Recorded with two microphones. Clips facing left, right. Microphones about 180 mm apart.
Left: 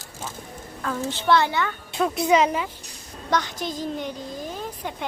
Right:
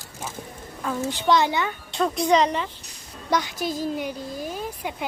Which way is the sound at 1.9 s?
5° left (ahead or behind).